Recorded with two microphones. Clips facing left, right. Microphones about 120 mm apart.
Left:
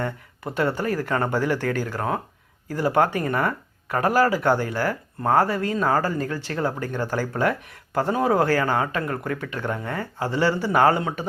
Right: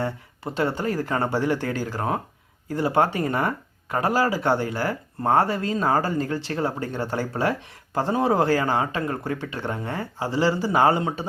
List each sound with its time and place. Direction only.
0.5 s speech: 25° right (ahead or behind)